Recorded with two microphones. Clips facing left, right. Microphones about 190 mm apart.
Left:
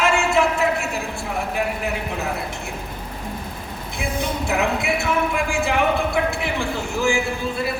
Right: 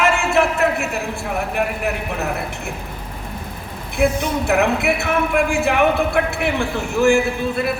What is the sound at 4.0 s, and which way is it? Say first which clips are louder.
Speech: right 7 dB; 60° right (ahead or behind).